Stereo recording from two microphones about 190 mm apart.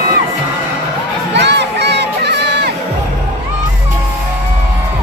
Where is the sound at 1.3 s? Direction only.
65° right (ahead or behind).